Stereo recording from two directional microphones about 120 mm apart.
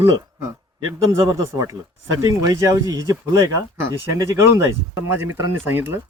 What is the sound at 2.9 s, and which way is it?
Speech, 30° right (ahead or behind).